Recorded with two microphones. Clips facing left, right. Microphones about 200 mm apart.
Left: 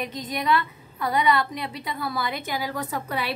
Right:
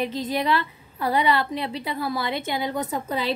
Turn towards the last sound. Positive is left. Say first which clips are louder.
# right 2 dB
turn(degrees=-25)  # may be behind; listen again after turning